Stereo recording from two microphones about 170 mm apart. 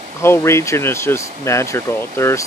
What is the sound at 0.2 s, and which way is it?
Speech, 15° left (ahead or behind).